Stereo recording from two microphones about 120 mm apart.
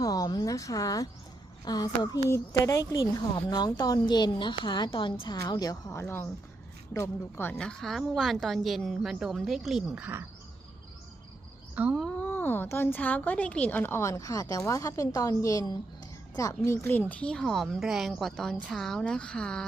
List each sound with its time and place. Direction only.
0.0 s a sound: 30° left (ahead or behind)
1.6 s speech: 35° left (ahead or behind)
5.4 s speech: 30° left (ahead or behind)
6.0 s a woman's voice: 20° left (ahead or behind)
7.6 s a woman's voice: 5° left (ahead or behind)
11.7 s speech: 10° right (ahead or behind)
11.9 s a woman's voice: 10° left (ahead or behind)